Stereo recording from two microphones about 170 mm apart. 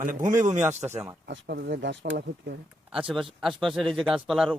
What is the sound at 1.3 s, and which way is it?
Speech, 65° right (ahead or behind).